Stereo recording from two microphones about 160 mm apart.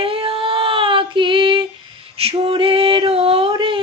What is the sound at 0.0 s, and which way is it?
Child singing, 35° right (ahead or behind).